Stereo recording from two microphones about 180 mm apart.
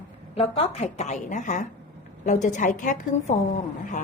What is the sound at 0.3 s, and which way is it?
A woman's voice, 30° left (ahead or behind).